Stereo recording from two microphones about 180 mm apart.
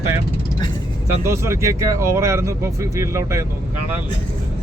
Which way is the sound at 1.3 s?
15° right (ahead or behind).